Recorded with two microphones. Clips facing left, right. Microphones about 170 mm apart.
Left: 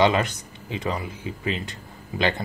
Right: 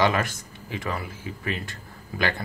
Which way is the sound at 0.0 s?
20° left (ahead or behind).